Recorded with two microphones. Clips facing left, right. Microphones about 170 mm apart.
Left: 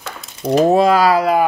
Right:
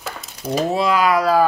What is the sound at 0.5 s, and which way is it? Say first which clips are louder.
Speech: left 7 dB; 45° left (ahead or behind).